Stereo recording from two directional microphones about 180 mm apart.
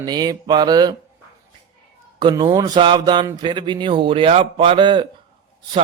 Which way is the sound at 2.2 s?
25° right (ahead or behind).